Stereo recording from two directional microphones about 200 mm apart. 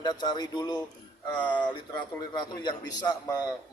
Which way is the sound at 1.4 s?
5° left (ahead or behind).